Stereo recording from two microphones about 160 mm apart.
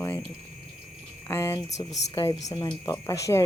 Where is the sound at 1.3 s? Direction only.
15° left (ahead or behind).